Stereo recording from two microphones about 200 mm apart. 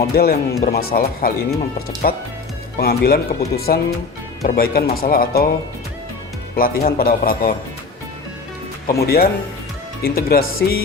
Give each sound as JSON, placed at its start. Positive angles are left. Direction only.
{"t": 0.1, "sound": "speech", "side_deg": 50}
{"t": 6.6, "sound": "speech", "side_deg": 45}
{"t": 9.0, "sound": "speech", "side_deg": 50}